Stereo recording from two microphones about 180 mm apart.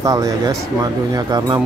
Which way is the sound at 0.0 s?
20° right (ahead or behind).